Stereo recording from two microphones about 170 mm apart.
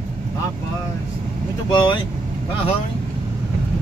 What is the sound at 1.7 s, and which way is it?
Speech, 25° left (ahead or behind).